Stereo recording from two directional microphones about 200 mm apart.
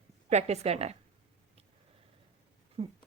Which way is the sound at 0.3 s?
35° right (ahead or behind).